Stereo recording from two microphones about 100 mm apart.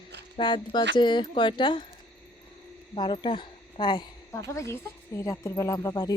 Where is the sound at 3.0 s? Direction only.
55° left (ahead or behind).